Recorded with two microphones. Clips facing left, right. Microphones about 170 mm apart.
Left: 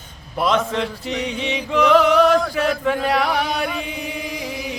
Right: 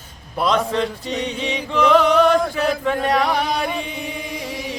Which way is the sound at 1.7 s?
5° left (ahead or behind).